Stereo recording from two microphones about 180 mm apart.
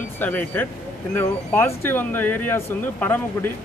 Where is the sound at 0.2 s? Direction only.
10° left (ahead or behind).